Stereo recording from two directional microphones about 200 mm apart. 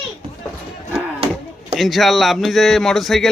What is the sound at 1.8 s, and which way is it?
A man's voice, centre (ahead or behind).